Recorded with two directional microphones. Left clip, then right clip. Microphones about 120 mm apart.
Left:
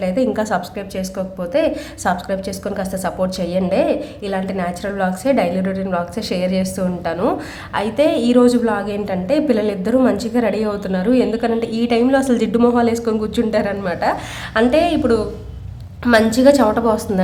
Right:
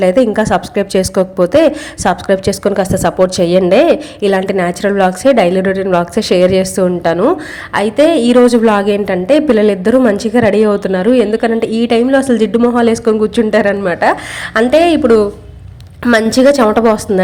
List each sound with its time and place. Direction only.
0.0 s speech: 55° right (ahead or behind)
0.3 s a woman's voice: 40° right (ahead or behind)
0.9 s a woman's voice: 65° right (ahead or behind); by 7.2 s 50° right (ahead or behind)
7.7 s a woman's voice: 35° right (ahead or behind)
12.7 s a woman's voice: 40° right (ahead or behind)